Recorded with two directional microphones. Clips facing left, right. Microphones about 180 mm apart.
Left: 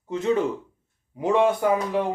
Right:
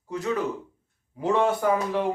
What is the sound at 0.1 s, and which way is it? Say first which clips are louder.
A man's voice: left 4 dB; 25° left (ahead or behind).